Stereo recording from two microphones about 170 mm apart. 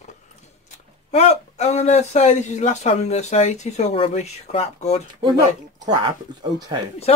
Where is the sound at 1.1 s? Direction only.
40° left (ahead or behind).